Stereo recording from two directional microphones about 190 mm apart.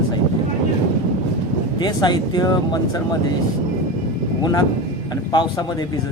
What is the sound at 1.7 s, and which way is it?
Speech, 20° left (ahead or behind).